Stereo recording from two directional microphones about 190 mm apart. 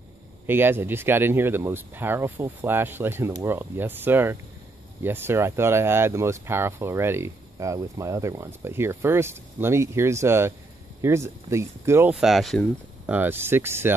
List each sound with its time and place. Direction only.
0.5 s speech: 10° right (ahead or behind)